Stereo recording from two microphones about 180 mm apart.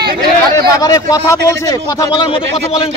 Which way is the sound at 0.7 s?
20° left (ahead or behind).